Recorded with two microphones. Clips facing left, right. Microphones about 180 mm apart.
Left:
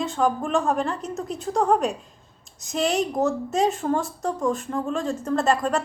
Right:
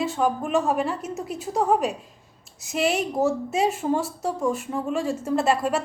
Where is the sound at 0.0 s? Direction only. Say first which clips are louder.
Even; 5° right (ahead or behind).